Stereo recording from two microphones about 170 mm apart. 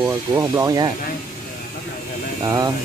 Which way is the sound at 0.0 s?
20° right (ahead or behind).